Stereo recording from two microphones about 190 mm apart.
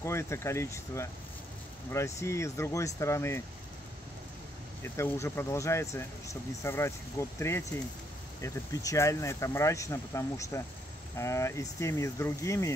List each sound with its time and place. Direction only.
0.0 s speech: 15° left (ahead or behind)
4.8 s speech: 15° left (ahead or behind)